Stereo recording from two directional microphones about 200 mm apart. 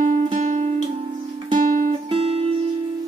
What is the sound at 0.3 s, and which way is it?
Music, 35° right (ahead or behind).